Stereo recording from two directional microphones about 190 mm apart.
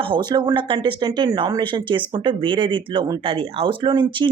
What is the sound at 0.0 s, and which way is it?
Speech, 25° right (ahead or behind).